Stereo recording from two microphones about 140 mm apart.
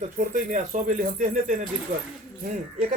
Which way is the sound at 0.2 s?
60° right (ahead or behind).